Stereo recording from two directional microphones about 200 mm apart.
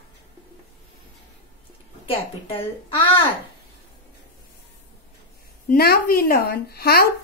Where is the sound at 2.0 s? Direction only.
25° left (ahead or behind).